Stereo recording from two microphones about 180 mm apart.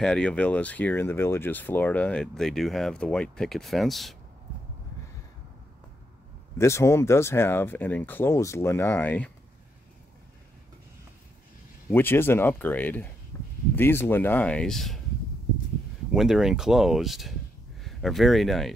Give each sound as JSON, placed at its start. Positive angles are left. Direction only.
{"t": 0.0, "sound": "speech", "side_deg": 5}
{"t": 6.6, "sound": "speech", "side_deg": 15}
{"t": 11.9, "sound": "speech", "side_deg": 10}
{"t": 13.3, "sound": "a sound", "side_deg": 15}
{"t": 13.7, "sound": "speech", "side_deg": 10}
{"t": 16.1, "sound": "speech", "side_deg": -5}